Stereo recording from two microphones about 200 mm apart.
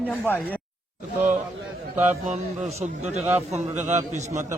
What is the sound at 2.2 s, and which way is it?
A man's voice, 35° right (ahead or behind).